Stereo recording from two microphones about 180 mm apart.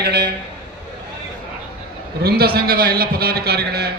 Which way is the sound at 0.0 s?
65° right (ahead or behind).